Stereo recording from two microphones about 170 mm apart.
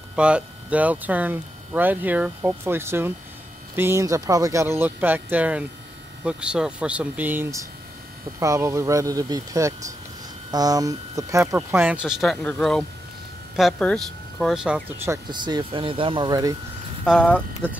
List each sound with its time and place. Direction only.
0.1 s speech: 5° right (ahead or behind)
11.5 s speech: 10° right (ahead or behind)
15.0 s speech: 25° right (ahead or behind)
17.6 s speech: 10° right (ahead or behind)